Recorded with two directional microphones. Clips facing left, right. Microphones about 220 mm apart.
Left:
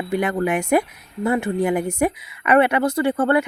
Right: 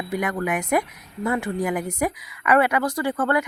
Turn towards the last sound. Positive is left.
turn(degrees=25)  # may be behind; listen again after turning